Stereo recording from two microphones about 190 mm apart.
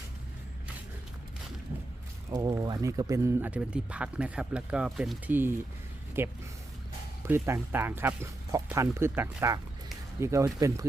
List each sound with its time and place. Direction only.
2.3 s speech: 20° right (ahead or behind)